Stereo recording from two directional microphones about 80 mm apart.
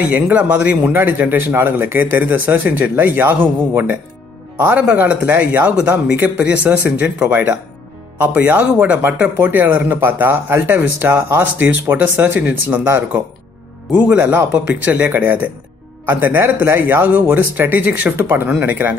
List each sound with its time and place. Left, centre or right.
0.1 s speech: centre